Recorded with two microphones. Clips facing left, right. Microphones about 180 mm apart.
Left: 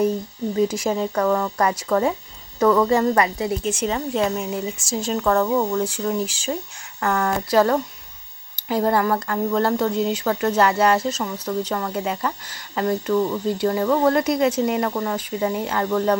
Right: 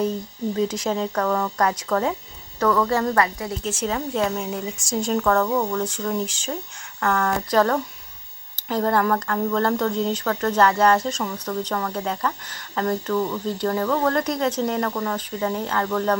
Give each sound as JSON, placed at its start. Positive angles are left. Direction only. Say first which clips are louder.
{"t": 0.5, "sound": "speech", "louder": "left 3 dB", "side_deg": 10}
{"t": 2.6, "sound": "speech", "louder": "left 4 dB", "side_deg": 20}
{"t": 3.6, "sound": "speech", "louder": "left 2 dB", "side_deg": 0}